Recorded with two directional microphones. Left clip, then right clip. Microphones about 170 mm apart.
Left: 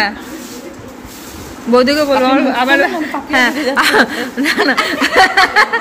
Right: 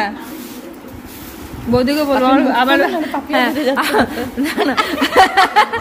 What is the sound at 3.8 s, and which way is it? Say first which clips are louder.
Speech: left 4 dB; 5° right (ahead or behind).